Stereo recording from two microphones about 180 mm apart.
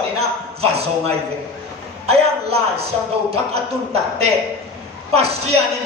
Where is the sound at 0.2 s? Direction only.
35° right (ahead or behind).